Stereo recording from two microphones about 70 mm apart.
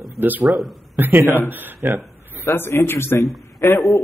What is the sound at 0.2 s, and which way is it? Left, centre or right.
Speech, right.